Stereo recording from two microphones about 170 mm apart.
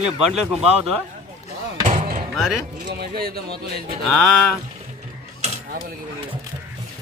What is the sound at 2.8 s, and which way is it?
Speech, 65° right (ahead or behind).